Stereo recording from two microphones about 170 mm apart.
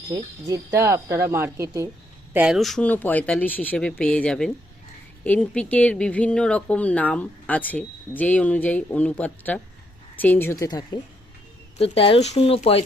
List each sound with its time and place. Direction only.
0.1 s speech: 20° right (ahead or behind)
2.3 s speech: 5° right (ahead or behind); by 11.0 s 25° left (ahead or behind)
11.8 s speech: 35° left (ahead or behind)